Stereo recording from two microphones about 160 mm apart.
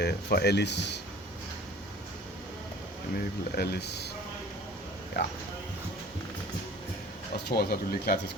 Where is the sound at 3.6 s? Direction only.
90° left.